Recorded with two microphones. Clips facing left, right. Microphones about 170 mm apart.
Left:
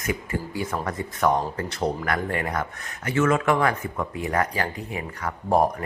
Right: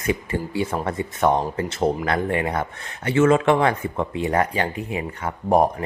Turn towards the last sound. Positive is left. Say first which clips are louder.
# right 3 dB
turn(degrees=-20)  # may be behind; listen again after turning